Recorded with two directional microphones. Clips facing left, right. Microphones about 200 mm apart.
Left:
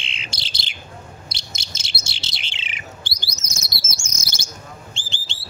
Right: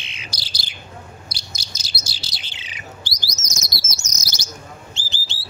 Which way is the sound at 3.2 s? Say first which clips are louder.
Right 2 dB; 55° left (ahead or behind).